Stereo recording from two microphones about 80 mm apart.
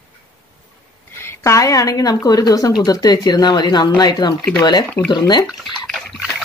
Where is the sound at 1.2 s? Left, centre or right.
Left.